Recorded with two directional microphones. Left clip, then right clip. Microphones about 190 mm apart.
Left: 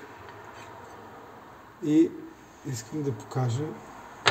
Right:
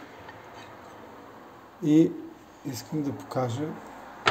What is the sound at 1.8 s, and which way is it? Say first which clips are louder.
Speech: right 1 dB; 30° right (ahead or behind).